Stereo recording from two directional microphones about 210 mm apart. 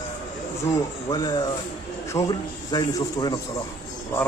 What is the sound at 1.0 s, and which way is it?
A man's voice, 15° left (ahead or behind).